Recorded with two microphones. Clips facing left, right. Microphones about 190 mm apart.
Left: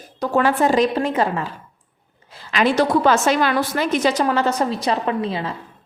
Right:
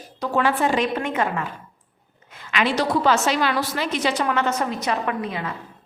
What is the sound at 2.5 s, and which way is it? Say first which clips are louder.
A woman's voice: left 4 dB; 45° left (ahead or behind).